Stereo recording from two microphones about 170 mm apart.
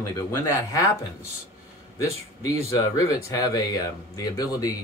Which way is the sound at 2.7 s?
20° left (ahead or behind).